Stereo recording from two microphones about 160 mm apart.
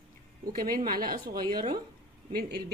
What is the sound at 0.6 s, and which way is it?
A woman's voice, 65° right (ahead or behind).